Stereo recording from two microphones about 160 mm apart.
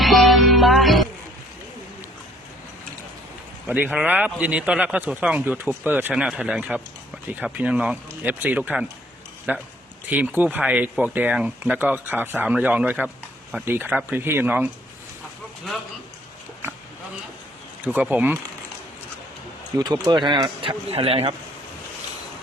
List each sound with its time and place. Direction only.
0.0 s music: centre (ahead or behind)
3.7 s a man's voice: 10° right (ahead or behind)
17.8 s a man's voice: 10° right (ahead or behind)
19.8 s speech: 25° right (ahead or behind)